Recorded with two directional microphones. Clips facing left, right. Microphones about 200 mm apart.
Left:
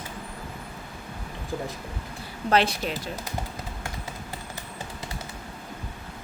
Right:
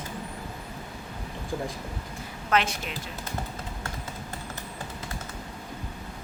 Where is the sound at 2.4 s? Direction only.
35° left (ahead or behind).